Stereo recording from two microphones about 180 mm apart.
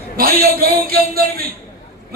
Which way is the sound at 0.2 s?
55° right (ahead or behind).